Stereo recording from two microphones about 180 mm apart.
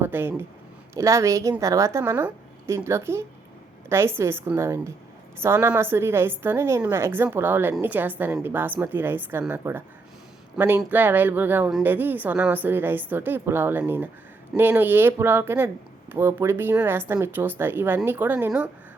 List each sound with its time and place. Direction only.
0.0 s speech: 10° right (ahead or behind)